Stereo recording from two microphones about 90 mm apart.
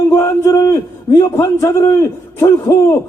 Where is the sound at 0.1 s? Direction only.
35° left (ahead or behind).